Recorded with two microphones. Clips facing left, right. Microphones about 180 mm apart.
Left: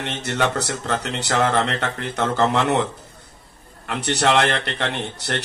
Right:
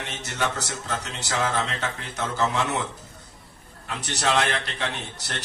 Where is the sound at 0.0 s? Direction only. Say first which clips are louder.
Left 6 dB; 60° left (ahead or behind).